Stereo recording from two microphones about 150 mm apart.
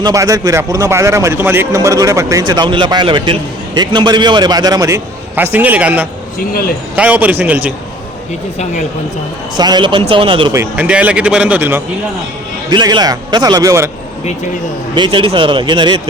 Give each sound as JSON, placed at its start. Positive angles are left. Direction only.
{"t": 0.0, "sound": "a man's voice", "side_deg": -20}
{"t": 6.5, "sound": "a man's voice", "side_deg": 80}
{"t": 6.9, "sound": "a man's voice", "side_deg": -10}
{"t": 9.6, "sound": "a man's voice", "side_deg": -30}
{"t": 10.5, "sound": "a man's voice", "side_deg": -15}
{"t": 12.7, "sound": "a man's voice", "side_deg": -30}
{"t": 14.9, "sound": "speech", "side_deg": -35}